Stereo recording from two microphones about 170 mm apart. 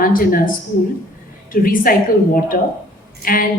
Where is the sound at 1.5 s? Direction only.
55° left (ahead or behind).